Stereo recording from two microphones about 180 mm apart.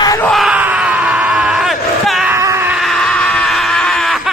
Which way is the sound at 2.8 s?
Centre (ahead or behind).